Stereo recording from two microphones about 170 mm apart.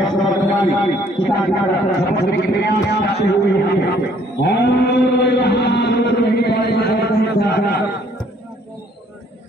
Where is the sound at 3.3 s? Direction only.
75° left (ahead or behind).